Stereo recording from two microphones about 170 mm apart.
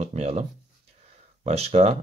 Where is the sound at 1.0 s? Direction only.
40° right (ahead or behind).